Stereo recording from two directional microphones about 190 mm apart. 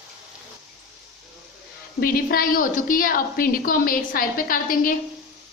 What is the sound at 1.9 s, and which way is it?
A woman's voice, 50° left (ahead or behind).